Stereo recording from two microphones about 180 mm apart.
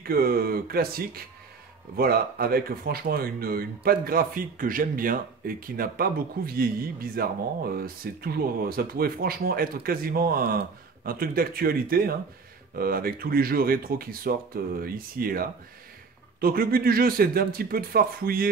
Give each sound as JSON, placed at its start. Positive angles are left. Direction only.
{"t": 0.0, "sound": "speech", "side_deg": -55}